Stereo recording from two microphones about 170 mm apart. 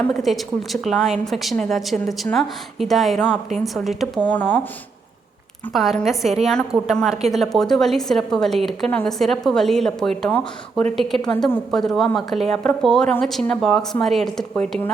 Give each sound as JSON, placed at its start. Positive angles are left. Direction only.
{"t": 0.0, "sound": "a woman's voice", "side_deg": 0}
{"t": 5.7, "sound": "a woman's voice", "side_deg": 0}